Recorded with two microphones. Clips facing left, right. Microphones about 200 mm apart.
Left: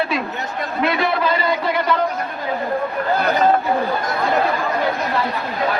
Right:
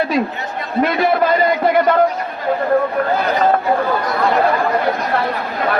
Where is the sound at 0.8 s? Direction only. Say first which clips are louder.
Right 5 dB; 45° right (ahead or behind).